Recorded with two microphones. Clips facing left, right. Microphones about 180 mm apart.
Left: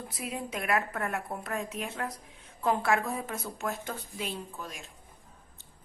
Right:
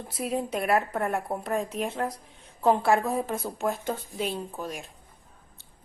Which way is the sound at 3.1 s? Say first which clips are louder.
Right 6 dB; 45° right (ahead or behind).